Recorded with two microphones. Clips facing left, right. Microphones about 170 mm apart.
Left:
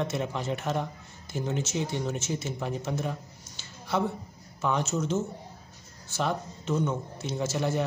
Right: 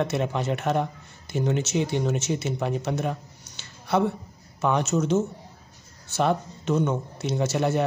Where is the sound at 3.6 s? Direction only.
65° right (ahead or behind).